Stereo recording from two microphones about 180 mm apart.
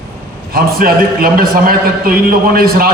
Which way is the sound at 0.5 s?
55° right (ahead or behind).